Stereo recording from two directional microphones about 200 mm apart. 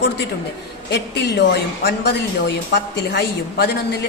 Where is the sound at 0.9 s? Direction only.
55° left (ahead or behind).